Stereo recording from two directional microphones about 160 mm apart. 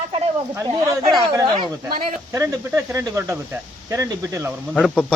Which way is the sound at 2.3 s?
20° right (ahead or behind).